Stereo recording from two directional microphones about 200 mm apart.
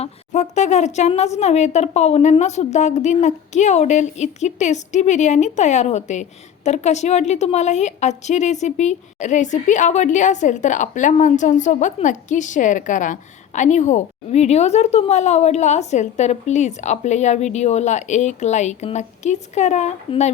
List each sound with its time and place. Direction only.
0.0 s a woman's voice: 35° left (ahead or behind)